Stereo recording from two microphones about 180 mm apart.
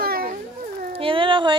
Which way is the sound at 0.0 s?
60° right (ahead or behind).